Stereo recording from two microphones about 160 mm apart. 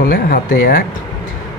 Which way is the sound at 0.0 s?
65° left (ahead or behind).